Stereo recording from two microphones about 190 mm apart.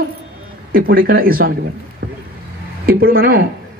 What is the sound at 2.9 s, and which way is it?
Speech, 50° right (ahead or behind).